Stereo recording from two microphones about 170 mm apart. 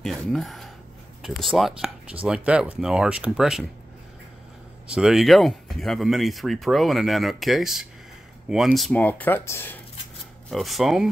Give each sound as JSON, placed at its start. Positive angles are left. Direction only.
{"t": 0.0, "sound": "a sound", "side_deg": 0}
{"t": 1.2, "sound": "speech", "side_deg": 0}
{"t": 4.8, "sound": "speech", "side_deg": -5}
{"t": 10.5, "sound": "speech", "side_deg": 0}